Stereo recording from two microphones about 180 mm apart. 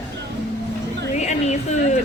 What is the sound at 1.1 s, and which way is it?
Speech, 40° left (ahead or behind).